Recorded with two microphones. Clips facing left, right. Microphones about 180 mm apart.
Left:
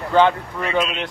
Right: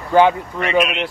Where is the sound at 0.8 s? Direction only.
65° right (ahead or behind).